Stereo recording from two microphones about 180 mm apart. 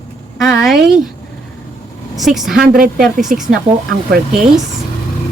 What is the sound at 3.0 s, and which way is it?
Speech, centre (ahead or behind).